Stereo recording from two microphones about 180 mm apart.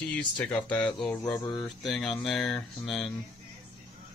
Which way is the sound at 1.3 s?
20° left (ahead or behind).